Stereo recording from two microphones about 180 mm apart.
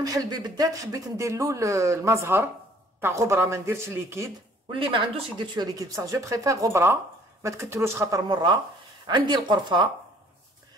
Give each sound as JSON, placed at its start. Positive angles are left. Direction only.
{"t": 0.0, "sound": "speech", "side_deg": -20}
{"t": 4.7, "sound": "speech", "side_deg": -25}